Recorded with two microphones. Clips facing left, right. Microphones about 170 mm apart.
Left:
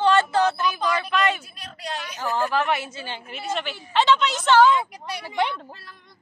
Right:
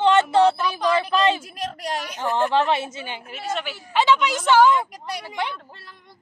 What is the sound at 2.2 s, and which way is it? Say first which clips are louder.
A woman's voice: right 3 dB; 25° right (ahead or behind).